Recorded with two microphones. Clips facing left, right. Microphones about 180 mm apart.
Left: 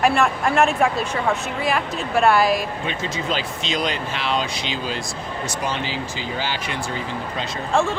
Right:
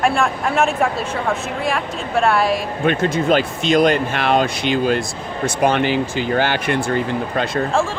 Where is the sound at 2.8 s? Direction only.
55° right (ahead or behind).